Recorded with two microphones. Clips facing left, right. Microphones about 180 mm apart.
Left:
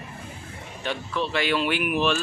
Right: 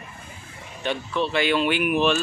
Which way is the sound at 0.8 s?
Centre (ahead or behind).